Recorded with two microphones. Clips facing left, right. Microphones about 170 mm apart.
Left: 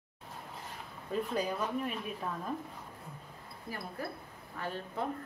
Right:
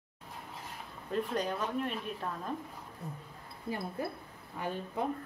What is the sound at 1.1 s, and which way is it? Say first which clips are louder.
A woman's voice: even; 5° left (ahead or behind).